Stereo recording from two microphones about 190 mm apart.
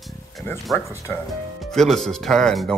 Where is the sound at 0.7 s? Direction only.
Centre (ahead or behind).